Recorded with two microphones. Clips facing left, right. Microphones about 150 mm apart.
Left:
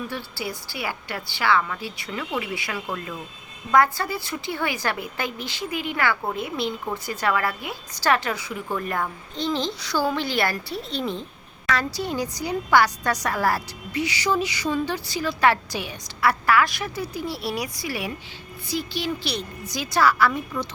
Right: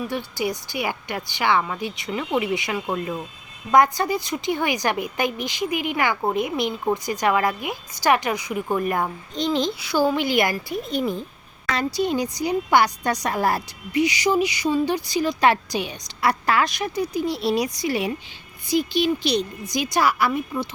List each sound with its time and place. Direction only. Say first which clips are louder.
0.1 s a woman's voice: right 6 dB; 15° right (ahead or behind)